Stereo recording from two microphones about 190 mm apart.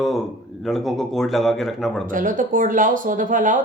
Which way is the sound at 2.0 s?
45° right (ahead or behind).